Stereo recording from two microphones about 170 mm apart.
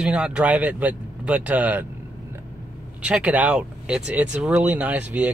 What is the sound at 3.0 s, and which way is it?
Speech, 5° right (ahead or behind).